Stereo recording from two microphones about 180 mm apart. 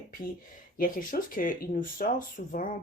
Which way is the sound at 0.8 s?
50° left (ahead or behind).